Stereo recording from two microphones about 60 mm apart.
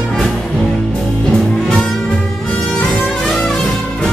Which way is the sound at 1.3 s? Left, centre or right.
Centre.